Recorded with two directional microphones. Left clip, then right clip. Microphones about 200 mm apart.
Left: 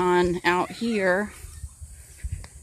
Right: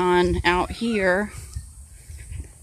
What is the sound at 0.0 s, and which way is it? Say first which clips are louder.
Speech: right 2 dB; 5° right (ahead or behind).